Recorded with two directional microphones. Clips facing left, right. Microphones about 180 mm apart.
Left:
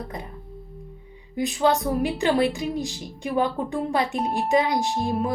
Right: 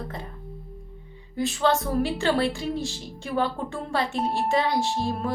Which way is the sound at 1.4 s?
15° left (ahead or behind).